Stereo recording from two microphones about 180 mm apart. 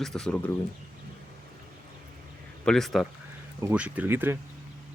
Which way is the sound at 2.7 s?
Centre (ahead or behind).